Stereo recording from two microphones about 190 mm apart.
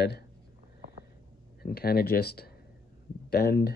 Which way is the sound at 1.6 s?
55° left (ahead or behind).